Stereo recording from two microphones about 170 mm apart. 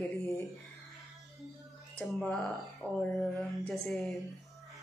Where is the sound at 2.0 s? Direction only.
Centre (ahead or behind).